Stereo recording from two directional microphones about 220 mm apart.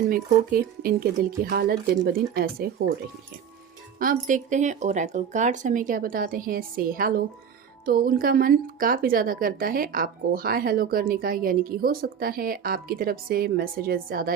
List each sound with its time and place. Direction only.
0.1 s speech: 40° right (ahead or behind)
3.9 s speech: 40° right (ahead or behind)